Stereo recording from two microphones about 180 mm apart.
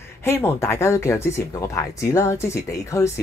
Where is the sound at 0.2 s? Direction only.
15° left (ahead or behind).